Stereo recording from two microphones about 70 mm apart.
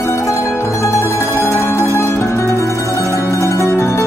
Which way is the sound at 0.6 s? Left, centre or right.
Left.